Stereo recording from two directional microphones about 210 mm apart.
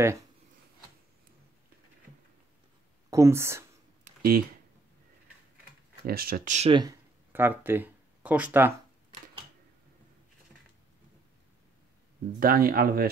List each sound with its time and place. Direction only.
3.1 s speech: 15° right (ahead or behind)
4.0 s a sound: 45° right (ahead or behind)
6.0 s speech: 45° right (ahead or behind)
7.3 s speech: 10° right (ahead or behind)
12.4 s speech: 45° right (ahead or behind)